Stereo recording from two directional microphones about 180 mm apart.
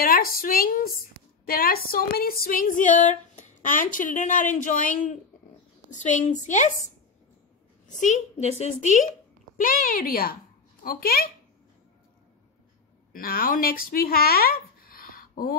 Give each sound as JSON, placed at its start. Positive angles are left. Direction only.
{"t": 0.0, "sound": "speech", "side_deg": 55}
{"t": 1.4, "sound": "music", "side_deg": 55}
{"t": 5.9, "sound": "a woman's voice", "side_deg": 40}
{"t": 8.0, "sound": "music", "side_deg": 40}
{"t": 10.8, "sound": "speech", "side_deg": 55}
{"t": 13.1, "sound": "speech", "side_deg": 50}